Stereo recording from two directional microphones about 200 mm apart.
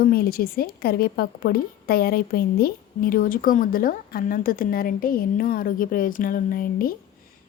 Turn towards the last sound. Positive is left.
turn(degrees=45)  # may be behind; listen again after turning